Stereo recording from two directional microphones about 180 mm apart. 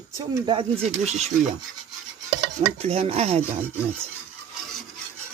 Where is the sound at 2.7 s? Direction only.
35° right (ahead or behind).